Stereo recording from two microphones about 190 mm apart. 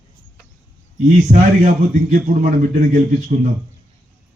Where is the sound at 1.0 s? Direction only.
40° right (ahead or behind).